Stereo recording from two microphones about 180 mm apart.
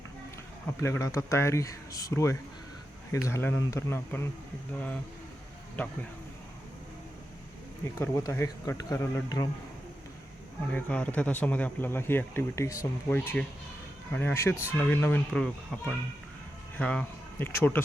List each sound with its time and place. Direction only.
0.8 s speech: 15° left (ahead or behind)
7.9 s speech: 15° left (ahead or behind)
10.7 s speech: 10° left (ahead or behind)